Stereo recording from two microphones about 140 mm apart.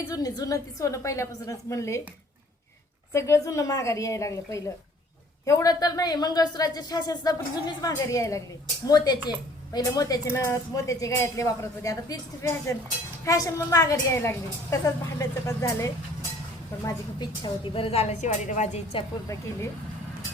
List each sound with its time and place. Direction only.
0.1 s speech: 25° left (ahead or behind)
3.1 s a woman's voice: 20° left (ahead or behind); by 18.9 s 55° left (ahead or behind)